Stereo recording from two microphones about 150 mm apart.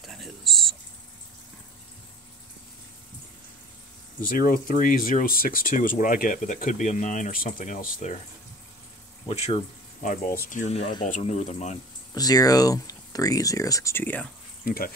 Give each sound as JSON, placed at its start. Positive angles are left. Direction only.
{"t": 0.0, "sound": "a sound", "side_deg": 0}
{"t": 4.2, "sound": "speech", "side_deg": 65}
{"t": 9.3, "sound": "speech", "side_deg": 45}
{"t": 11.1, "sound": "speech", "side_deg": 50}
{"t": 12.1, "sound": "speech", "side_deg": 25}
{"t": 14.6, "sound": "speech", "side_deg": 75}